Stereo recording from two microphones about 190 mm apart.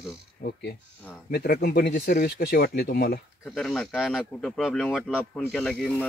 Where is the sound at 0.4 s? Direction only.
55° left (ahead or behind).